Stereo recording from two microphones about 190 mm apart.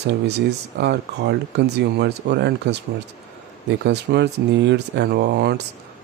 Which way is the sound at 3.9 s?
65° right (ahead or behind).